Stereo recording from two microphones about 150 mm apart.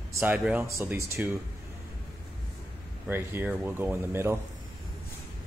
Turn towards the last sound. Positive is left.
turn(degrees=-15)  # may be behind; listen again after turning